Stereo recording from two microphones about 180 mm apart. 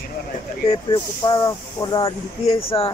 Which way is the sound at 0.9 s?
25° left (ahead or behind).